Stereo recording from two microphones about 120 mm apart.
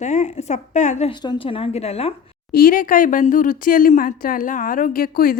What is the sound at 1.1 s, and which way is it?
A woman's voice, 45° left (ahead or behind).